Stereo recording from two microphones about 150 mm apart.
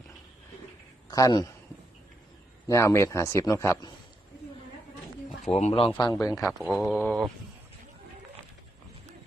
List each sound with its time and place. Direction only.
1.1 s a man's voice: 25° left (ahead or behind)
2.6 s a man's voice: 20° left (ahead or behind)
5.5 s speech: 45° left (ahead or behind)
6.0 s a man's voice: 25° left (ahead or behind)
6.6 s speech: centre (ahead or behind)